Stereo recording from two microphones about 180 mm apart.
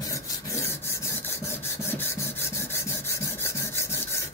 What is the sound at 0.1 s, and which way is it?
Filing, 15° left (ahead or behind).